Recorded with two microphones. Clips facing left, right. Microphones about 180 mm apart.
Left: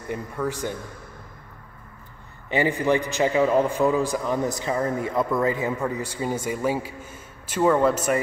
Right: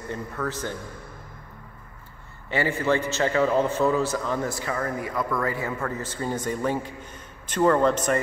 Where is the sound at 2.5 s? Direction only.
15° left (ahead or behind).